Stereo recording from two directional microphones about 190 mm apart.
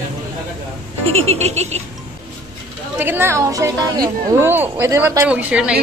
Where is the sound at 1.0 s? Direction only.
30° right (ahead or behind).